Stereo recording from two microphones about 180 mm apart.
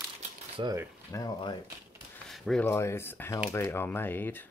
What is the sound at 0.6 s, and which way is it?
Speech, 25° right (ahead or behind).